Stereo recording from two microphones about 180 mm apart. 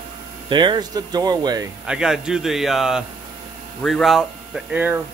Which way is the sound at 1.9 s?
5° right (ahead or behind).